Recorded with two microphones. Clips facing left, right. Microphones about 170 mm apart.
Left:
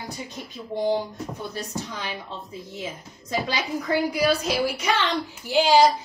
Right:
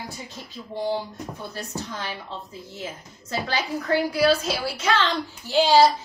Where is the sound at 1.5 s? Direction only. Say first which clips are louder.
Left 1 dB; 15° left (ahead or behind).